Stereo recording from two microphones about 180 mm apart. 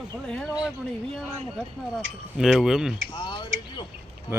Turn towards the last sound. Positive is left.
turn(degrees=-15)  # may be behind; listen again after turning